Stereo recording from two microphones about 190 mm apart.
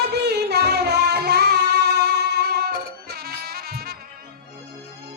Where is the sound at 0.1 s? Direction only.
60° right (ahead or behind).